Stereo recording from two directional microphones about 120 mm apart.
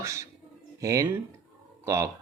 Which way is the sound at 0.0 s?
25° right (ahead or behind).